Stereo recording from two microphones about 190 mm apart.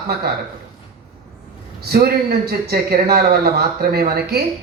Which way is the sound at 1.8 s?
55° right (ahead or behind).